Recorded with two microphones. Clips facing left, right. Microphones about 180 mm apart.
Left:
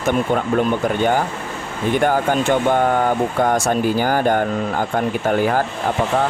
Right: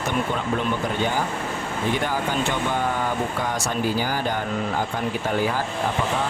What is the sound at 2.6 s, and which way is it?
Speech, 55° left (ahead or behind).